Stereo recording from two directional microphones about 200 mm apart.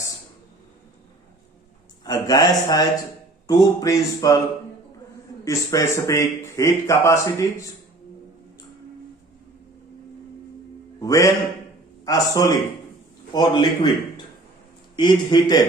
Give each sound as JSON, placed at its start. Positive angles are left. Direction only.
{"t": 2.0, "sound": "a man's voice", "side_deg": 20}
{"t": 5.5, "sound": "speech", "side_deg": 15}
{"t": 11.0, "sound": "a man's voice", "side_deg": 15}